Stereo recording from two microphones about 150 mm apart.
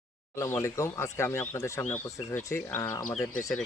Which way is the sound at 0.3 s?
20° left (ahead or behind).